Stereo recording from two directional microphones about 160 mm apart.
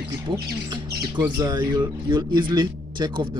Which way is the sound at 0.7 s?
25° right (ahead or behind).